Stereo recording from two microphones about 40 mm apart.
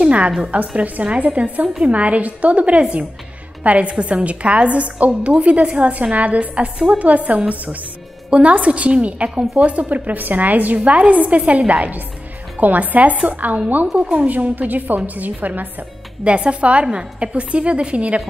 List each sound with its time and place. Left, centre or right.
0.0 s a sound: right
0.5 s a woman's voice: right
10.8 s a woman's voice: right
16.3 s a woman's voice: right